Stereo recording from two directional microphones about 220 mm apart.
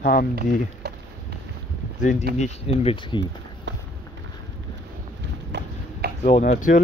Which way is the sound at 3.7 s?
55° right (ahead or behind).